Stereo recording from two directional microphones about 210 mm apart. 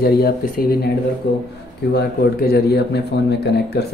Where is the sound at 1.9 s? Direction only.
50° left (ahead or behind).